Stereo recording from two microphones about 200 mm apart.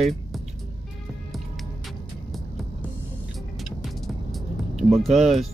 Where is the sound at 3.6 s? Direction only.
Centre (ahead or behind).